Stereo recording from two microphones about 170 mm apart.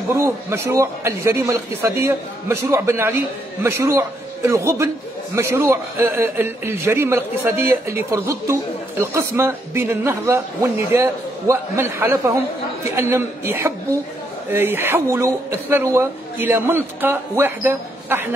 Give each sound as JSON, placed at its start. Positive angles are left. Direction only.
{"t": 0.1, "sound": "a man's voice", "side_deg": -15}